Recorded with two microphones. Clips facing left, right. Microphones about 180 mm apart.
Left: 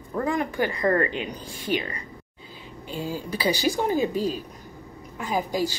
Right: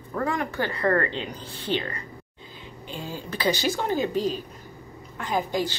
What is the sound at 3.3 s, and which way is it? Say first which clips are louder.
Speech: even; 10° left (ahead or behind).